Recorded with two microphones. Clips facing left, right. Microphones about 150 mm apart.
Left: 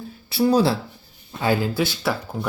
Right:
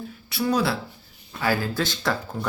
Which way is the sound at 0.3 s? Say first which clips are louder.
Left 5 dB; 30° left (ahead or behind).